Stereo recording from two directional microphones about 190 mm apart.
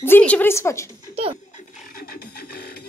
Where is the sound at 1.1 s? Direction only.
30° right (ahead or behind).